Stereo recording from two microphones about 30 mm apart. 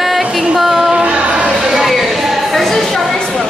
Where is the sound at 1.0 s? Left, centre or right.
Right.